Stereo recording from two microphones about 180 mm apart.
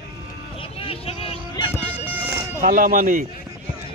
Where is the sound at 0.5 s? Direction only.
30° left (ahead or behind).